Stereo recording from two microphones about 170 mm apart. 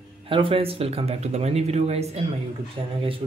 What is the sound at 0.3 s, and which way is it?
Speech, 30° right (ahead or behind).